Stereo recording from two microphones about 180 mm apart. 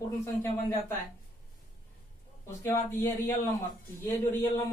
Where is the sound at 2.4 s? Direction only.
15° left (ahead or behind).